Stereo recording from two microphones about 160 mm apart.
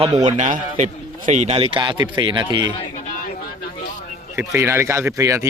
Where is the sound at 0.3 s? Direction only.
50° right (ahead or behind); by 2.7 s 25° right (ahead or behind).